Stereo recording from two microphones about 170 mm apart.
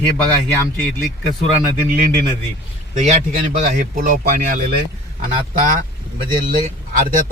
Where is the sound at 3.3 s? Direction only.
55° right (ahead or behind).